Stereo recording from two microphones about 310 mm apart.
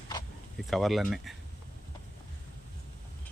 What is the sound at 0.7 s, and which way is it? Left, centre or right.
Speech, centre.